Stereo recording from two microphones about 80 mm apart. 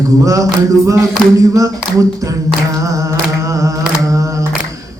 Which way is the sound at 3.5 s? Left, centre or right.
Right.